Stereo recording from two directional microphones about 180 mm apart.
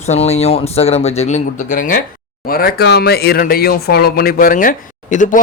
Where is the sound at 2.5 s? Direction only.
55° left (ahead or behind).